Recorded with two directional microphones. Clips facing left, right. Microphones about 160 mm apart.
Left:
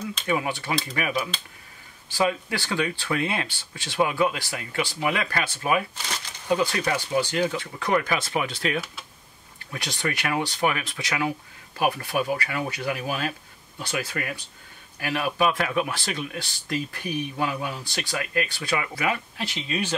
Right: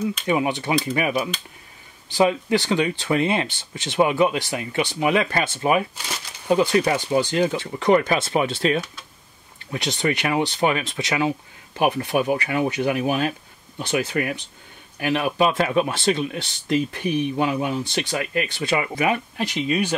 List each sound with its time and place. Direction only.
0.3 s speech: 20° right (ahead or behind)